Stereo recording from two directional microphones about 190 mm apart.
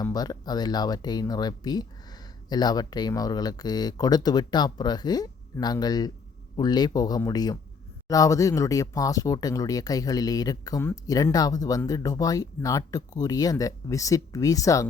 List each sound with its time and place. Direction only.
0.0 s speech: 20° left (ahead or behind)